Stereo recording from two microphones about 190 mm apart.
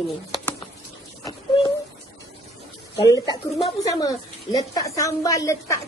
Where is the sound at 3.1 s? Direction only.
20° left (ahead or behind).